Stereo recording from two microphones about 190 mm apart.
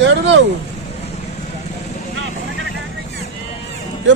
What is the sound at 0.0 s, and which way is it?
Speech, 70° right (ahead or behind).